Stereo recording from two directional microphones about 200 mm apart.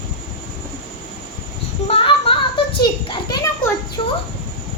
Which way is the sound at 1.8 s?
30° left (ahead or behind).